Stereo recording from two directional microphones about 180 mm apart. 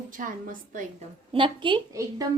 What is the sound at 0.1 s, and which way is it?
Speech, 45° right (ahead or behind).